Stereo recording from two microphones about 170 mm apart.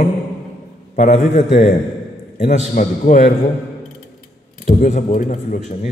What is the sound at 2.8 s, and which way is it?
Speech, 45° left (ahead or behind).